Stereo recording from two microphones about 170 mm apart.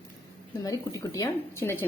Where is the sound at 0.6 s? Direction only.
20° left (ahead or behind).